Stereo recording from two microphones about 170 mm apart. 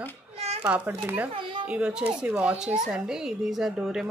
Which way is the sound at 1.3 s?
30° right (ahead or behind).